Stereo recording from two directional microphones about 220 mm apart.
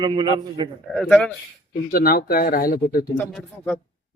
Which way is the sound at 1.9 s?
40° left (ahead or behind).